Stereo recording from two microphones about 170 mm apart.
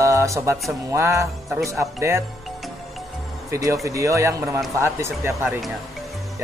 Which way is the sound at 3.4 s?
20° right (ahead or behind).